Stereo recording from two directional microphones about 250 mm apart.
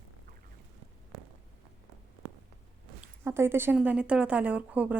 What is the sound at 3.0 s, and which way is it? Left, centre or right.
A woman's voice, centre.